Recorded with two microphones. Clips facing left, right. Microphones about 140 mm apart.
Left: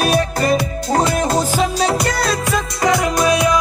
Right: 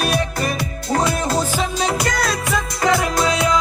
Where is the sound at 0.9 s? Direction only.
40° left (ahead or behind).